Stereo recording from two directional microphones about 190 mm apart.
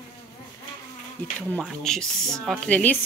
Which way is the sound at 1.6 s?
5° left (ahead or behind).